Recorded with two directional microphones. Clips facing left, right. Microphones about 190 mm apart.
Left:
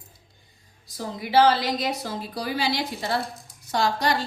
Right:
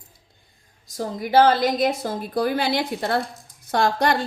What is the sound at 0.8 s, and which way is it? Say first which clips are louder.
A woman's voice: right 5 dB; 45° right (ahead or behind).